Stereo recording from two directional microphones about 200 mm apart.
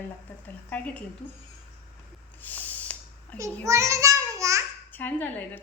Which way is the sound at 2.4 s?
10° left (ahead or behind).